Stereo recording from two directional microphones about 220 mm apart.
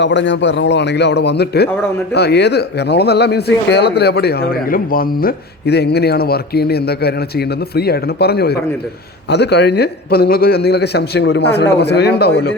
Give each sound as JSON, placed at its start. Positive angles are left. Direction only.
{"t": 0.0, "sound": "speech", "side_deg": 55}